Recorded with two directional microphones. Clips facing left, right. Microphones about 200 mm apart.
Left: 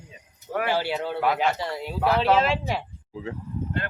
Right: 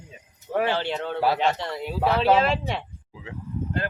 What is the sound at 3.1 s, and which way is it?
Speech, 35° left (ahead or behind).